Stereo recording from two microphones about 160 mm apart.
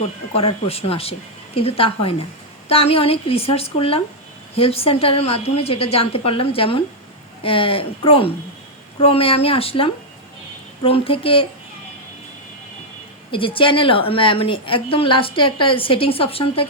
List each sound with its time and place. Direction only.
0.3 s a woman's voice: 40° left (ahead or behind)
13.3 s a woman's voice: 35° left (ahead or behind)